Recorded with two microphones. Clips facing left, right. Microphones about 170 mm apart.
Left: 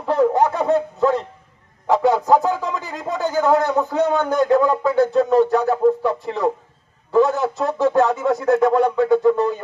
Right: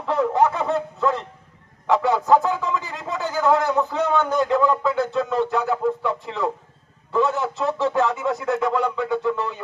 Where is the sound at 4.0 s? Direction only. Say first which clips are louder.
Left 5 dB; 40° left (ahead or behind).